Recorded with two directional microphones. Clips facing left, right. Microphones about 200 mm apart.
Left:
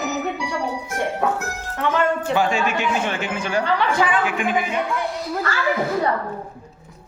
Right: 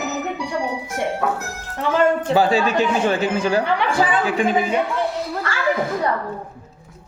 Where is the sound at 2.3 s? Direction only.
35° right (ahead or behind).